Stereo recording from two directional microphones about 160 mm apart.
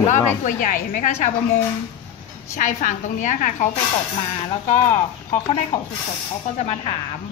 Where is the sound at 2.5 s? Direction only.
50° left (ahead or behind).